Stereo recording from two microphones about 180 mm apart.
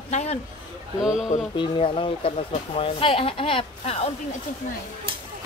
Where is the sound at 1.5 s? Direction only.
25° left (ahead or behind).